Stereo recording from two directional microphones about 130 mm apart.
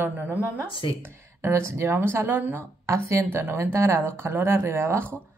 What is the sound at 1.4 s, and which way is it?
Speech, 20° right (ahead or behind).